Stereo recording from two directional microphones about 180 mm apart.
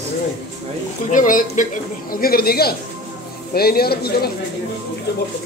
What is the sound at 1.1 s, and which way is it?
Speech, 45° left (ahead or behind).